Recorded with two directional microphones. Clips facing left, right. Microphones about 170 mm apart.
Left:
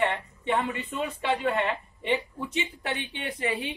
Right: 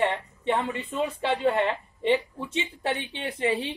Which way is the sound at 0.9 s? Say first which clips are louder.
Right 2 dB; 30° right (ahead or behind).